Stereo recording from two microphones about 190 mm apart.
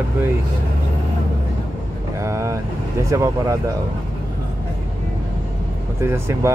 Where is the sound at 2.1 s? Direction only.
15° right (ahead or behind).